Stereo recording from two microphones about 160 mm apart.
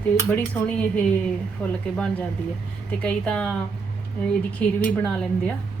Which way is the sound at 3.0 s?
5° left (ahead or behind).